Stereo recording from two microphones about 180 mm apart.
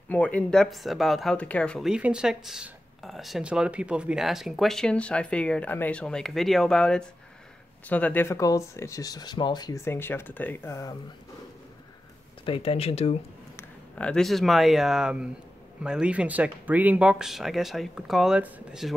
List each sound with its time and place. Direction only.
0.1 s speech: 10° left (ahead or behind)
12.4 s speech: 30° left (ahead or behind)
13.6 s speech: 5° left (ahead or behind)